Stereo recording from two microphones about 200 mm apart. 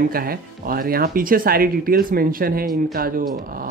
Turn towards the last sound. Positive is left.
turn(degrees=-50)  # may be behind; listen again after turning